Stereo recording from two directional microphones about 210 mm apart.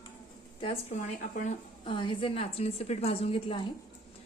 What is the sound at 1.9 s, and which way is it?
A woman's voice, 25° left (ahead or behind).